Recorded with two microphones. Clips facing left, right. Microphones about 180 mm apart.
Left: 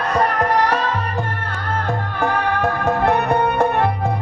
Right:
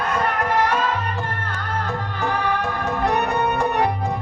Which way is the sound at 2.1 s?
55° left (ahead or behind).